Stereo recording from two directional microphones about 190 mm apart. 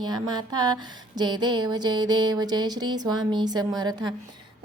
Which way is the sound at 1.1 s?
25° right (ahead or behind).